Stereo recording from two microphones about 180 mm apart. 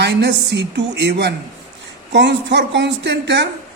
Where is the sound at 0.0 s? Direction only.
70° right (ahead or behind).